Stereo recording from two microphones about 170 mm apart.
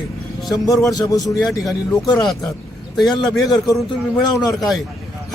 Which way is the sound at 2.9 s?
Centre (ahead or behind).